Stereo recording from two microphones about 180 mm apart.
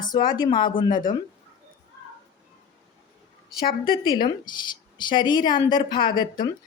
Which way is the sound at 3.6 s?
55° left (ahead or behind).